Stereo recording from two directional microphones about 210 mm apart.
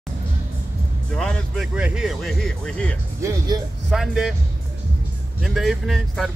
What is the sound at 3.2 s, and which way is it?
Speech, 15° right (ahead or behind).